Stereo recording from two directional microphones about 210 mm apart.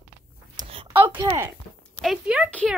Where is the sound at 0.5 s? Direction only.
25° right (ahead or behind).